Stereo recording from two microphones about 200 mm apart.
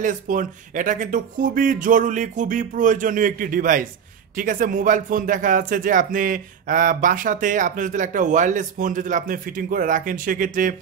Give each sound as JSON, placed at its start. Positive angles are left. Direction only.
{"t": 0.0, "sound": "speech", "side_deg": -40}